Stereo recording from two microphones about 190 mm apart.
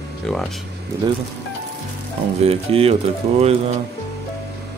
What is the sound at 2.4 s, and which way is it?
Speech, 30° right (ahead or behind).